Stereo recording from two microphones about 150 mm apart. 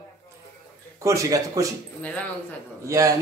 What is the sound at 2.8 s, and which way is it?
Speech, 20° right (ahead or behind).